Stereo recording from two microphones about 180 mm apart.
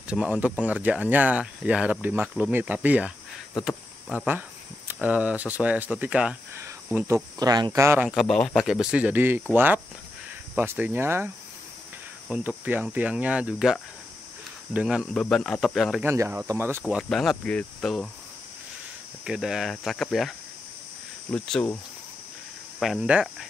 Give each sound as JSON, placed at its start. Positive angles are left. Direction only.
{"t": 0.0, "sound": "speech", "side_deg": -5}
{"t": 3.6, "sound": "cricket", "side_deg": 0}
{"t": 4.9, "sound": "speech", "side_deg": -10}
{"t": 8.2, "sound": "speech", "side_deg": 0}
{"t": 16.0, "sound": "speech", "side_deg": -15}
{"t": 16.8, "sound": "speech", "side_deg": 0}
{"t": 19.2, "sound": "speech", "side_deg": -5}
{"t": 22.8, "sound": "speech", "side_deg": -5}